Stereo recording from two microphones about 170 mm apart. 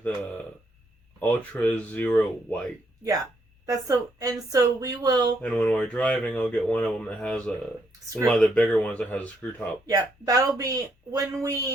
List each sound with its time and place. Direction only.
1.2 s speech: 10° left (ahead or behind)
3.7 s speech: 20° right (ahead or behind)
5.4 s speech: 10° left (ahead or behind)
9.9 s speech: 20° right (ahead or behind)